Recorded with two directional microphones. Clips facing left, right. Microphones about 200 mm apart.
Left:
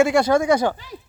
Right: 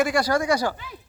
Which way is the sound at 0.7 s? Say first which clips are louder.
Left 3 dB; 35° left (ahead or behind).